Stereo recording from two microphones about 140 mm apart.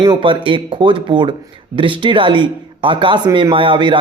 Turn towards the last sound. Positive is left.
turn(degrees=-35)  # may be behind; listen again after turning